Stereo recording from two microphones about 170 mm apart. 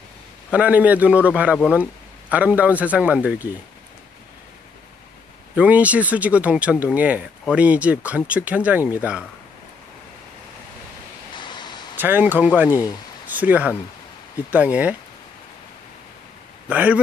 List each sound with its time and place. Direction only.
0.5 s a man's voice: 10° right (ahead or behind)
5.6 s a man's voice: 10° right (ahead or behind)
11.3 s vehicle: 25° left (ahead or behind)
12.0 s a man's voice: 10° right (ahead or behind)
16.6 s a man's voice: 10° right (ahead or behind)